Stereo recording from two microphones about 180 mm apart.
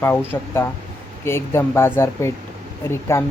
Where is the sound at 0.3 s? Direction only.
15° left (ahead or behind).